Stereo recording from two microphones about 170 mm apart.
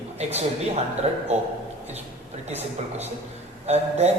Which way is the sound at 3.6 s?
40° right (ahead or behind).